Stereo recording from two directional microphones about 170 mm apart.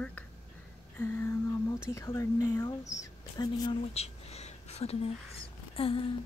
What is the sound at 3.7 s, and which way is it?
Speech, 35° left (ahead or behind).